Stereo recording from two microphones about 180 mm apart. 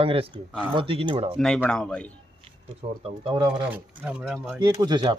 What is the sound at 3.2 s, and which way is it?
Speech, 30° right (ahead or behind).